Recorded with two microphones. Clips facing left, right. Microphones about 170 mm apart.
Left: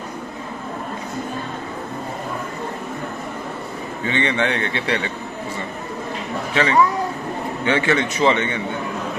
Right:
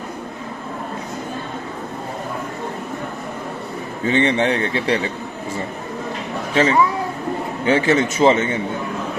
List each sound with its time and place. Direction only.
4.0 s a man's voice: 40° right (ahead or behind)
6.5 s a man's voice: 40° right (ahead or behind)